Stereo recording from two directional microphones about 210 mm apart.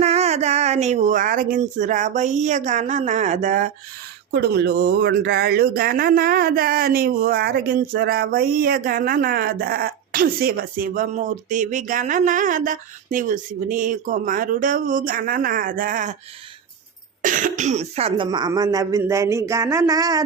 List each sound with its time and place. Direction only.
0.0 s speech: 30° right (ahead or behind)
4.3 s speech: 50° right (ahead or behind)
17.2 s speech: 40° right (ahead or behind); by 20.2 s 15° right (ahead or behind)